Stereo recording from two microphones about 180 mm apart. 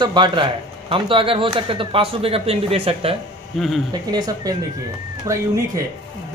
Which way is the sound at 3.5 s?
Centre (ahead or behind).